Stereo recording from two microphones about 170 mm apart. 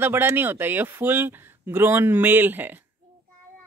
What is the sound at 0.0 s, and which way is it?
Speech, 10° right (ahead or behind).